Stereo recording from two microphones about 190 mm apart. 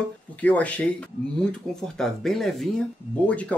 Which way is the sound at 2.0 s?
Centre (ahead or behind).